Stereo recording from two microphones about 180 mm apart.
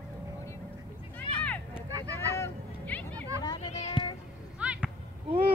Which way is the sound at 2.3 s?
10° left (ahead or behind).